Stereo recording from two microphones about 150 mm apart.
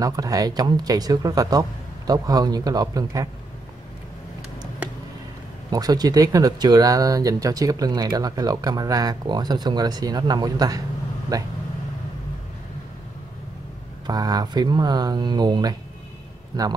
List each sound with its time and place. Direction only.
0.0 s speech: 25° right (ahead or behind)
5.7 s speech: 25° right (ahead or behind)
14.0 s speech: 25° right (ahead or behind)